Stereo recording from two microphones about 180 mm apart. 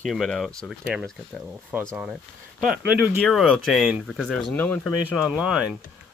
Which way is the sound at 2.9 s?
5° right (ahead or behind).